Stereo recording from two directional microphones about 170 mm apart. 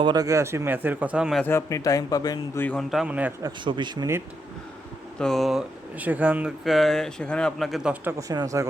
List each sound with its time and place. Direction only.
0.0 s speech: 25° right (ahead or behind); by 1.4 s 5° right (ahead or behind)
1.4 s a man's voice: 15° left (ahead or behind)
2.6 s speech: centre (ahead or behind)
3.4 s a man's voice: 30° right (ahead or behind)
5.2 s speech: centre (ahead or behind)
8.3 s a man's voice: 20° right (ahead or behind)